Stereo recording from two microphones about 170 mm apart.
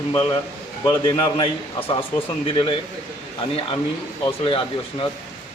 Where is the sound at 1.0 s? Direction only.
30° left (ahead or behind).